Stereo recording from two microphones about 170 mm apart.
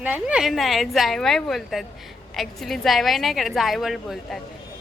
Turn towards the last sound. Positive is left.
turn(degrees=0)  # may be behind; listen again after turning